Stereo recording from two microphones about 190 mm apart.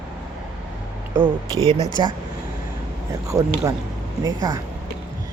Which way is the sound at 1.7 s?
20° left (ahead or behind).